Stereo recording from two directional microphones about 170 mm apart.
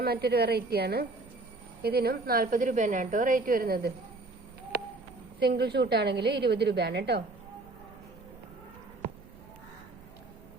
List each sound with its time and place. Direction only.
0.0 s a woman's voice: 70° right (ahead or behind)
5.4 s a woman's voice: 75° right (ahead or behind)